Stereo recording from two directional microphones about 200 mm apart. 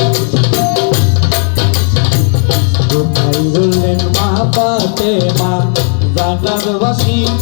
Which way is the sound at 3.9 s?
25° left (ahead or behind).